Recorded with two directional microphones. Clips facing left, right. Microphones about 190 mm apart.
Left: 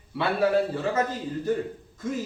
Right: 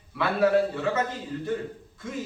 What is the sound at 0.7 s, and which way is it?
Speech, 35° left (ahead or behind).